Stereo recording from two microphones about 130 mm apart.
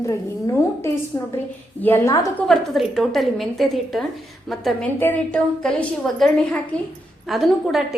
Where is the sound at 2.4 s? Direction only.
Centre (ahead or behind).